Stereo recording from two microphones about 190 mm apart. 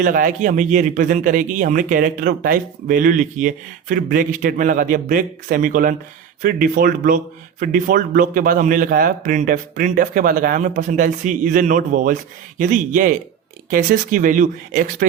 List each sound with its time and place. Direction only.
0.0 s a man's voice: 45° right (ahead or behind)